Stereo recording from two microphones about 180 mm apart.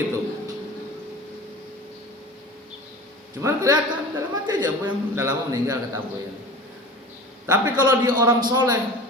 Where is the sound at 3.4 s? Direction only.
15° right (ahead or behind).